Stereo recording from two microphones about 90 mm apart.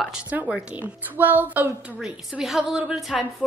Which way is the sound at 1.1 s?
20° right (ahead or behind).